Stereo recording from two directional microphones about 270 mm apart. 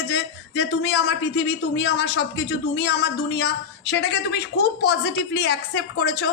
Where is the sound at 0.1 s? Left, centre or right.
Left.